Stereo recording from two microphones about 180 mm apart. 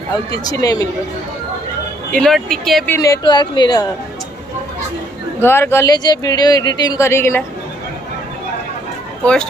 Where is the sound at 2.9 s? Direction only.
20° left (ahead or behind).